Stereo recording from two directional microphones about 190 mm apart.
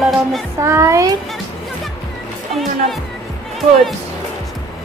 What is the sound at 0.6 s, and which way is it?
Speech, 15° right (ahead or behind).